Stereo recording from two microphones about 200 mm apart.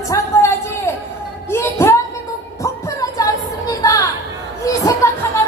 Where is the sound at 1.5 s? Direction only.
15° left (ahead or behind).